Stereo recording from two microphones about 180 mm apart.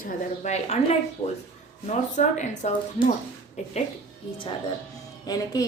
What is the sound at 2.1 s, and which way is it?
Speech, 40° left (ahead or behind).